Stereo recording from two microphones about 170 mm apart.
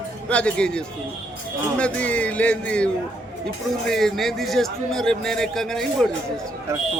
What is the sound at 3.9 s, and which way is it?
A man's voice, centre (ahead or behind).